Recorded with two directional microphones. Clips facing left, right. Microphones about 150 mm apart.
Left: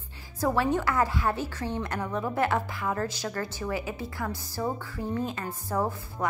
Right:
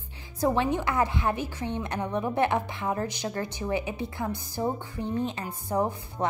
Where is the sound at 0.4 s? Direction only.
20° right (ahead or behind).